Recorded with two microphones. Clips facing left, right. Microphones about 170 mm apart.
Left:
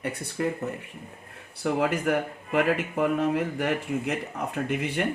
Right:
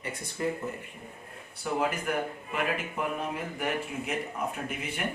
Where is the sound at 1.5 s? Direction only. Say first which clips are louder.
Left 5 dB; 75° left (ahead or behind).